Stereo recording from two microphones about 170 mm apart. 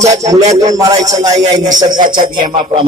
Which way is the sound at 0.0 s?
40° right (ahead or behind).